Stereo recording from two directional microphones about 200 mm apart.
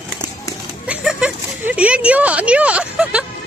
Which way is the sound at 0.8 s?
5° right (ahead or behind).